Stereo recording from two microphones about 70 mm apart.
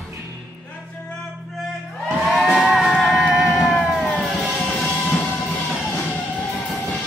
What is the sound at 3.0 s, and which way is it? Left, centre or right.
Music, centre.